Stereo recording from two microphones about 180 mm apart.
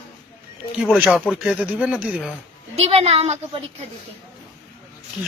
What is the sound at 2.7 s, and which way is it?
Child singing, 30° right (ahead or behind).